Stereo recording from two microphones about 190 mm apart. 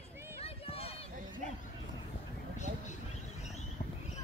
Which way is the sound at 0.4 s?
30° left (ahead or behind).